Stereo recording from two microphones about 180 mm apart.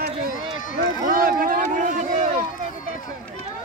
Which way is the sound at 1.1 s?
50° right (ahead or behind).